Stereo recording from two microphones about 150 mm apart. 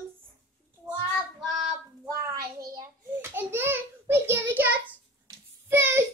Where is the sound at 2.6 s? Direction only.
20° right (ahead or behind).